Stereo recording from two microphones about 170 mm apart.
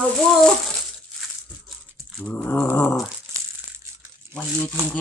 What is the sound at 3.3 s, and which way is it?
Crushing, 15° right (ahead or behind).